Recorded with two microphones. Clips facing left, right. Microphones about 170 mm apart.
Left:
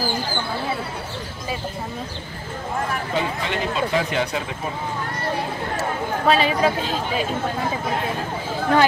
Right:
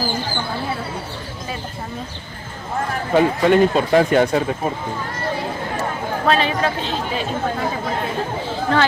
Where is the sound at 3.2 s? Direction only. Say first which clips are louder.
Right 13 dB; 50° right (ahead or behind).